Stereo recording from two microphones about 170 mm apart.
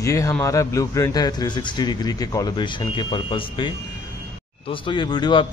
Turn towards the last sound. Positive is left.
turn(degrees=25)  # may be behind; listen again after turning